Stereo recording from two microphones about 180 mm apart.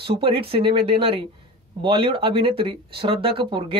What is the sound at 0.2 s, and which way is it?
Speech, 30° right (ahead or behind).